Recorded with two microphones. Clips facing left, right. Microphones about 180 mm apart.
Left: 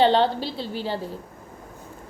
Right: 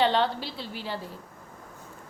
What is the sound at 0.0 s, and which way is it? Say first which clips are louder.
A woman's voice: left 5 dB; 30° left (ahead or behind).